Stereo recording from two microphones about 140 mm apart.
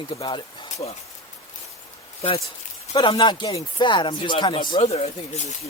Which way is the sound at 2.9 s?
35° left (ahead or behind).